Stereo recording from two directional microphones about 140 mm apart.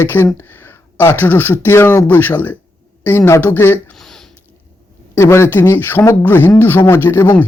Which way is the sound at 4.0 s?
5° left (ahead or behind).